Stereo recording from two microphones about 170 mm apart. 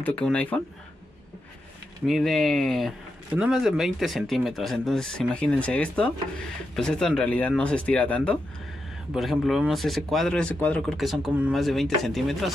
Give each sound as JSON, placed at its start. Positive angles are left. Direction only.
{"t": 0.0, "sound": "speech", "side_deg": 5}
{"t": 2.0, "sound": "speech", "side_deg": 0}